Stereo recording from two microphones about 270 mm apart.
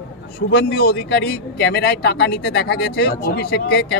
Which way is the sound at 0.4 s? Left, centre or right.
Left.